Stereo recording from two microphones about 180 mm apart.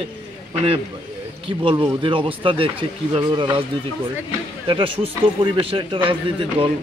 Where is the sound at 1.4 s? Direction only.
30° right (ahead or behind).